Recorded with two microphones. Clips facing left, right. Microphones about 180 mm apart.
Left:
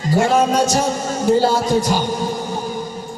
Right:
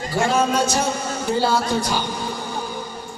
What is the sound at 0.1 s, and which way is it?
A man's voice, 45° left (ahead or behind).